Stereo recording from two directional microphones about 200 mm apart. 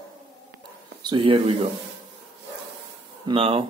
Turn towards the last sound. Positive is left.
turn(degrees=-25)  # may be behind; listen again after turning